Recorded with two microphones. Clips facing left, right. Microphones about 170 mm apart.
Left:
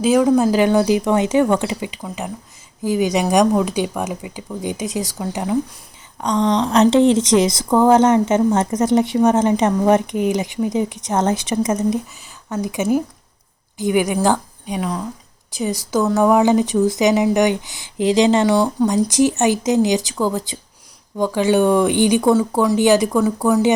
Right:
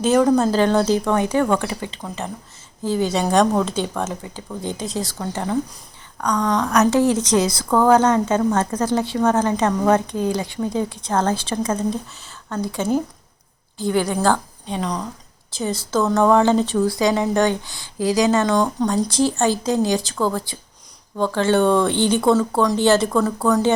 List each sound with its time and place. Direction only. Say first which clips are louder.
0.0 s speech: left 2 dB; 5° left (ahead or behind)
6.1 s a woman's voice: left 3 dB; 20° left (ahead or behind)
16.0 s speech: left 1 dB; 5° left (ahead or behind)
16.3 s a woman's voice: left 1 dB; 15° left (ahead or behind)
18.4 s speech: left 3 dB; 10° left (ahead or behind)